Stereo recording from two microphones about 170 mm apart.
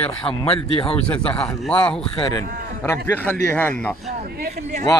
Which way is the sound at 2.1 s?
25° left (ahead or behind).